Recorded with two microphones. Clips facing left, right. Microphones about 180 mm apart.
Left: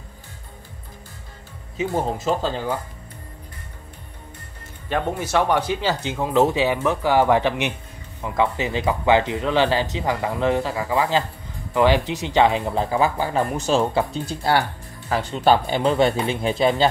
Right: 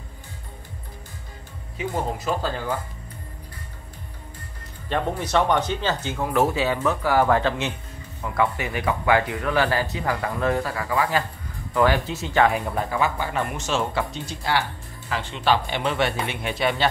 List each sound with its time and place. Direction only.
1.8 s speech: 25° left (ahead or behind)
4.9 s speech: 5° left (ahead or behind); by 14.0 s 35° left (ahead or behind)
15.0 s speech: 40° left (ahead or behind)